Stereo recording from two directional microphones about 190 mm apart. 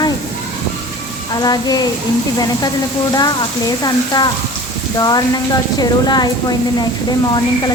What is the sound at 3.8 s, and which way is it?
A woman's voice, 20° left (ahead or behind).